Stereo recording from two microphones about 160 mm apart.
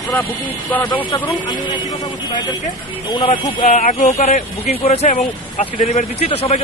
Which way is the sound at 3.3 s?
45° left (ahead or behind).